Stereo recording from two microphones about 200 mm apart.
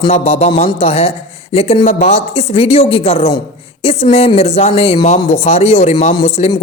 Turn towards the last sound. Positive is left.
turn(degrees=25)  # may be behind; listen again after turning